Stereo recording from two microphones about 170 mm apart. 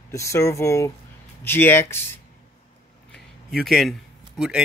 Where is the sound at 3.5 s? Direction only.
Centre (ahead or behind).